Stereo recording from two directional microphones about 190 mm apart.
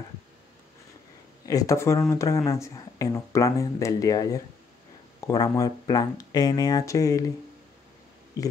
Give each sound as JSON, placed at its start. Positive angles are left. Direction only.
{"t": 1.4, "sound": "speech", "side_deg": 20}